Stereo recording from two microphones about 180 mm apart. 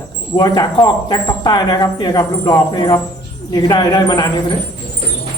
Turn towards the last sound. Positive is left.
turn(degrees=25)  # may be behind; listen again after turning